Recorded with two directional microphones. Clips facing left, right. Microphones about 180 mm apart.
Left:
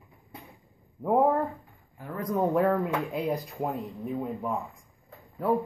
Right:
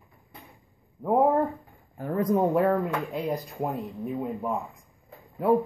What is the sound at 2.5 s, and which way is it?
Speech, 5° right (ahead or behind).